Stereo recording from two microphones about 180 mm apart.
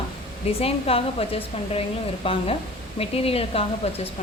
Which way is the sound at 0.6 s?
30° left (ahead or behind).